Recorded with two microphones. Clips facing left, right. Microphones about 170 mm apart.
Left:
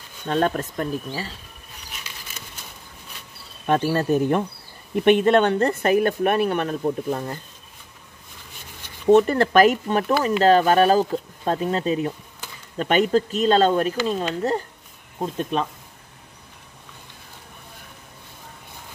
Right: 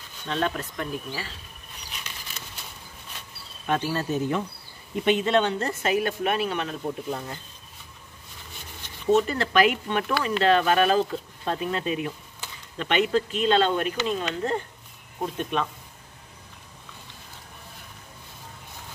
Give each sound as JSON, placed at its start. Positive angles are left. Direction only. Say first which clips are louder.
{"t": 0.3, "sound": "speech", "louder": "left 6 dB", "side_deg": 45}
{"t": 3.6, "sound": "speech", "louder": "left 6 dB", "side_deg": 50}
{"t": 9.0, "sound": "speech", "louder": "left 6 dB", "side_deg": 50}
{"t": 12.7, "sound": "speech", "louder": "left 4 dB", "side_deg": 45}